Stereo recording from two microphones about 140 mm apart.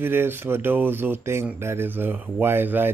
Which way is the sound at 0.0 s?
15° right (ahead or behind).